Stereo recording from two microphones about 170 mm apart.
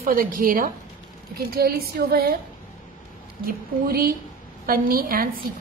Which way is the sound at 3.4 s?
60° right (ahead or behind).